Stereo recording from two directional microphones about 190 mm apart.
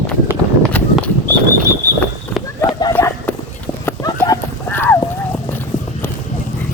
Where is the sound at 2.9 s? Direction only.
10° left (ahead or behind).